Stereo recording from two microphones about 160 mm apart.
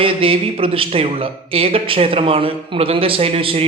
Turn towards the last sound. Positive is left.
turn(degrees=-35)  # may be behind; listen again after turning